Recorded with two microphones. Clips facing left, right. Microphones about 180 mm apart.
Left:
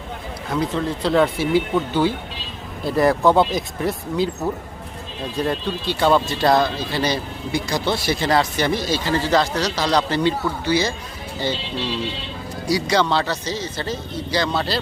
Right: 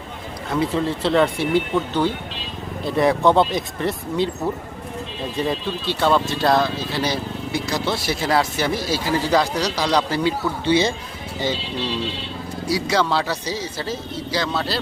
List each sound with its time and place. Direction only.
0.5 s speech: 5° right (ahead or behind)
10.7 s speech: 25° right (ahead or behind)
12.6 s speech: 5° right (ahead or behind)